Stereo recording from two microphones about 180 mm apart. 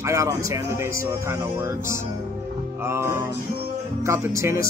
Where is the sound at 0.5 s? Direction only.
15° right (ahead or behind).